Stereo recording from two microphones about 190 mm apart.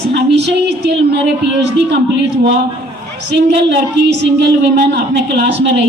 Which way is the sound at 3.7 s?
65° right (ahead or behind).